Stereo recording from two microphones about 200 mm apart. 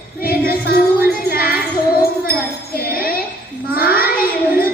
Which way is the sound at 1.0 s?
50° left (ahead or behind).